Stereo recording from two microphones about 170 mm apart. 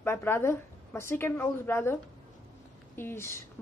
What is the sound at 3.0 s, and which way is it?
Speech, 15° left (ahead or behind).